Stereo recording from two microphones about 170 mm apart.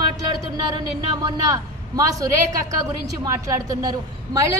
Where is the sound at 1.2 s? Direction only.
20° right (ahead or behind).